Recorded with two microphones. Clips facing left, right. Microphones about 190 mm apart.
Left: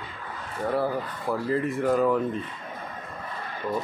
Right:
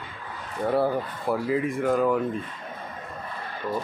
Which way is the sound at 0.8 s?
25° right (ahead or behind).